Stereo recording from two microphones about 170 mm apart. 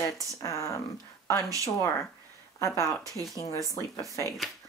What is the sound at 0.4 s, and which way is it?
Speech, 15° left (ahead or behind).